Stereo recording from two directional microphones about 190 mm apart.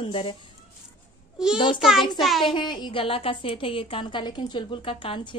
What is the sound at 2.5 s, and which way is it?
A woman's voice, 25° left (ahead or behind).